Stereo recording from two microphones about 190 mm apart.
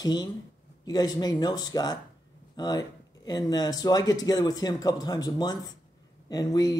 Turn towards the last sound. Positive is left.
turn(degrees=20)  # may be behind; listen again after turning